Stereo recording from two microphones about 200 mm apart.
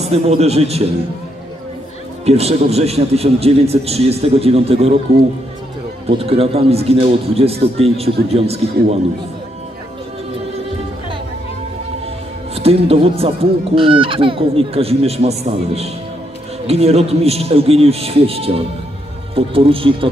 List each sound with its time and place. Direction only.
0.0 s a man's voice: 30° right (ahead or behind)
2.2 s a man's voice: 30° right (ahead or behind)
6.0 s a man's voice: 30° right (ahead or behind)
12.5 s speech: 30° right (ahead or behind)